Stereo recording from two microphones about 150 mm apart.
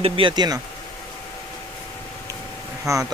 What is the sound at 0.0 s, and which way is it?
Speech, 35° right (ahead or behind).